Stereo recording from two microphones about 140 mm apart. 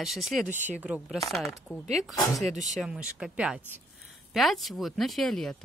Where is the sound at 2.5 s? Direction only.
60° right (ahead or behind).